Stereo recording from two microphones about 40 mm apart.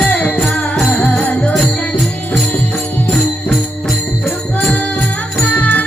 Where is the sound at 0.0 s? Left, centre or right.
Left.